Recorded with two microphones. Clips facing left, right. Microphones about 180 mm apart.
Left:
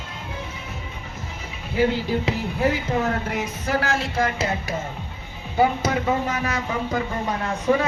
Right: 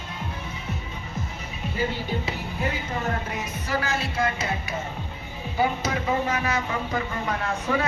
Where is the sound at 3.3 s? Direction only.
90° left.